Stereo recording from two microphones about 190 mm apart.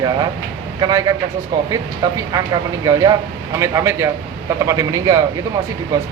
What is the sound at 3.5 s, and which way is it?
A man's voice, 15° right (ahead or behind).